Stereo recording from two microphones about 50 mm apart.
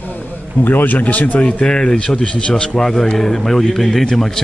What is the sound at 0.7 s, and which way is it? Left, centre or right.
Speech, left.